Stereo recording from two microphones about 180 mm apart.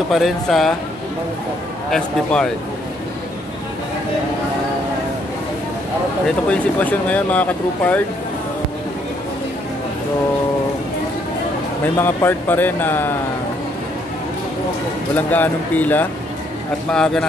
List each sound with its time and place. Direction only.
0.1 s speech: centre (ahead or behind)
1.9 s speech: 5° left (ahead or behind)
6.2 s speech: 10° left (ahead or behind)
12.0 s speech: 10° left (ahead or behind)
15.1 s speech: 10° left (ahead or behind)